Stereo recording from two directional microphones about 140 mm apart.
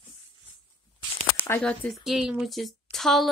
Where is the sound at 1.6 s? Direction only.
10° left (ahead or behind).